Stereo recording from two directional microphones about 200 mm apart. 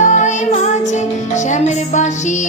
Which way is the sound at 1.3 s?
35° left (ahead or behind).